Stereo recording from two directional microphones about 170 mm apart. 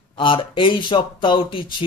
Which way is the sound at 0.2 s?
30° left (ahead or behind).